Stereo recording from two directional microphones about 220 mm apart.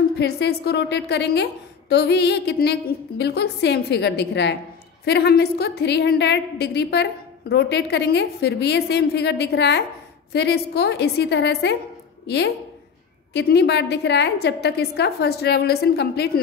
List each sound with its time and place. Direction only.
0.2 s a woman's voice: 45° left (ahead or behind)